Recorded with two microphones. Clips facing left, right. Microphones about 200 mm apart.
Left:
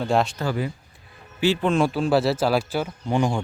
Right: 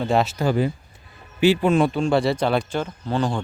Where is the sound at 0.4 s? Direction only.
30° right (ahead or behind).